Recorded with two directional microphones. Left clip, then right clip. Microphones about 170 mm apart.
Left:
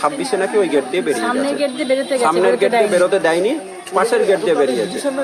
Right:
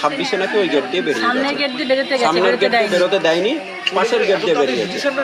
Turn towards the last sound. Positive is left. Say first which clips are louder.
# left 1 dB
turn(degrees=15)  # may be behind; listen again after turning